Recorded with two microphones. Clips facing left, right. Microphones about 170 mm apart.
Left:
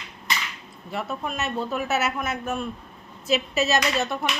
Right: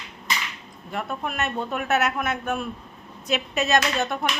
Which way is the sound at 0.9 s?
5° left (ahead or behind).